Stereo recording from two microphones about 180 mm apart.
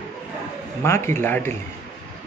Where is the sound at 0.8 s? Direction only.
15° left (ahead or behind).